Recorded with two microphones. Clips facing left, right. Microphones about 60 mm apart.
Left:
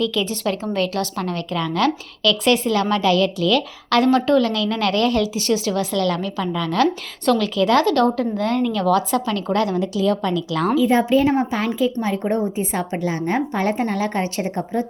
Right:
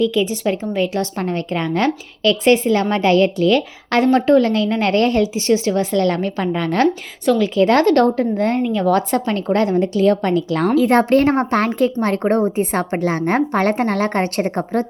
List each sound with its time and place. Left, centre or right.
0.0 s speech: right
0.9 s a woman's voice: right
7.3 s speech: right
7.6 s a woman's voice: right
8.6 s speech: right
8.9 s a woman's voice: right
10.8 s a woman's voice: right